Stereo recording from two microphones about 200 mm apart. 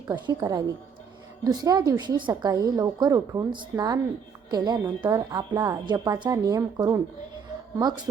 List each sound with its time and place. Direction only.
0.1 s a woman's voice: 20° right (ahead or behind)